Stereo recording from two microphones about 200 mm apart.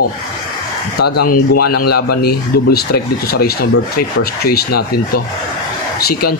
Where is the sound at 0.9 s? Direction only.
50° left (ahead or behind).